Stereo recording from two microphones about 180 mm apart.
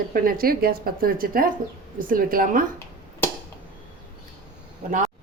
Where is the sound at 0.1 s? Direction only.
55° right (ahead or behind).